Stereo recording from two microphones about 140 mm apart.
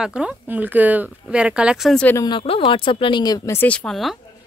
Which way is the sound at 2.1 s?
25° left (ahead or behind).